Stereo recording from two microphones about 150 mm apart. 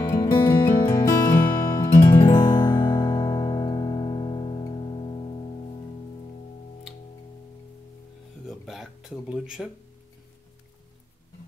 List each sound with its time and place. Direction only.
0.0 s music: 20° left (ahead or behind)
2.3 s music: 35° left (ahead or behind)
8.5 s a sound: centre (ahead or behind)